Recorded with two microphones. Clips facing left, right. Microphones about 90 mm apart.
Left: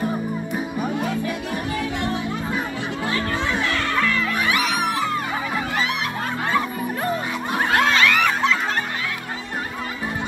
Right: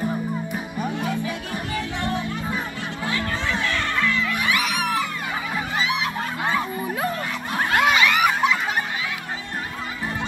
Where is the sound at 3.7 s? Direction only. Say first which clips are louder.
Left 2 dB; 40° left (ahead or behind).